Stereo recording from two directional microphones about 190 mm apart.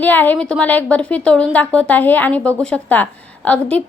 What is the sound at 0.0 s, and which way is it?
A woman's voice, 10° left (ahead or behind).